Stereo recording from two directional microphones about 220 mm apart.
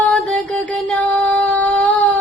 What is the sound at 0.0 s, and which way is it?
Music, centre (ahead or behind).